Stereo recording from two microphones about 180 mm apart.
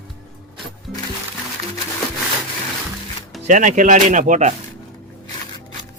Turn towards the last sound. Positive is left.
turn(degrees=-40)  # may be behind; listen again after turning